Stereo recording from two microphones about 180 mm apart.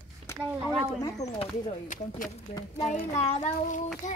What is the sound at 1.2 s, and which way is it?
A child's voice, 40° left (ahead or behind).